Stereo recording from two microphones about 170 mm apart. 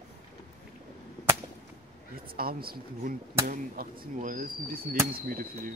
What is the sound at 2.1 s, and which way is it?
Speech, 60° right (ahead or behind).